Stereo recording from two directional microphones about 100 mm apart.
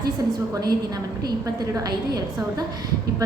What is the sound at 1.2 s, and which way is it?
A woman's voice, 40° right (ahead or behind).